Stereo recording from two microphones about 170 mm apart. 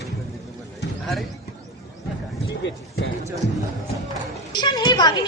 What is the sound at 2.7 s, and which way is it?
Basketball bounce, 90° left.